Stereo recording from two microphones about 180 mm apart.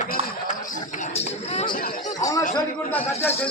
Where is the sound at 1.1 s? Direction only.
35° left (ahead or behind).